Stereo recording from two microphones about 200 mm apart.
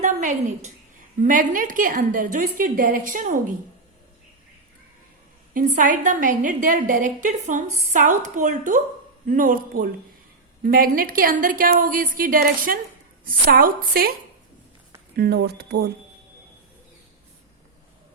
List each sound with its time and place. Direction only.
0.0 s a woman's voice: 40° right (ahead or behind)
5.5 s a woman's voice: 40° right (ahead or behind)
15.1 s speech: 50° right (ahead or behind)